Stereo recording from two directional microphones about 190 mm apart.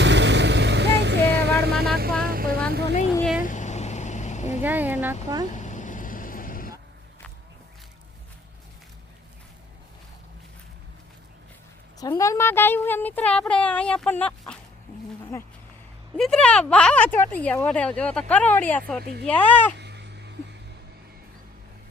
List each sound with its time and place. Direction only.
0.0 s vehicle: 70° right (ahead or behind); by 2.6 s 50° right (ahead or behind)
2.6 s a sound: 60° right (ahead or behind)
3.4 s vehicle: 40° left (ahead or behind)
4.6 s speech: 10° right (ahead or behind)
5.5 s vehicle: 40° left (ahead or behind)
11.9 s speech: 15° left (ahead or behind)
16.1 s speech: 5° left (ahead or behind)
19.8 s cat: 65° right (ahead or behind)